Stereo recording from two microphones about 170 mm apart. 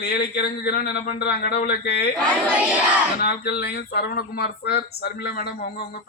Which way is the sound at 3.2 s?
70° left (ahead or behind).